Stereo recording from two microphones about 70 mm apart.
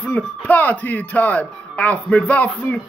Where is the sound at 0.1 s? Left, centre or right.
Left.